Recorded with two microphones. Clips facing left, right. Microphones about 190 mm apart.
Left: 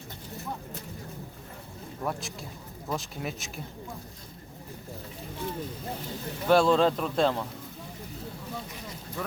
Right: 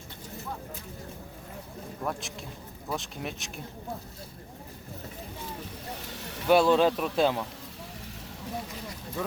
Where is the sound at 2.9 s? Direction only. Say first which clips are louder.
Left 1 dB; centre (ahead or behind).